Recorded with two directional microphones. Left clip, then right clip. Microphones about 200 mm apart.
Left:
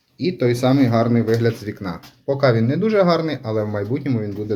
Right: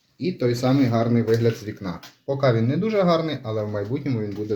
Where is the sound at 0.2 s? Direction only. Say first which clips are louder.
Left 4 dB; 5° left (ahead or behind).